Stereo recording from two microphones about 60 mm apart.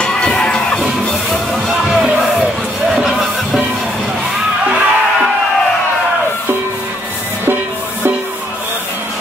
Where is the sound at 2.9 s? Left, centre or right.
Centre.